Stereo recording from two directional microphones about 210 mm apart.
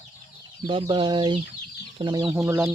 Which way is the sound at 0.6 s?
25° right (ahead or behind).